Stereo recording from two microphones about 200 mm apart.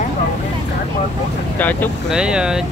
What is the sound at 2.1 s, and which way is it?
Speech, 5° right (ahead or behind).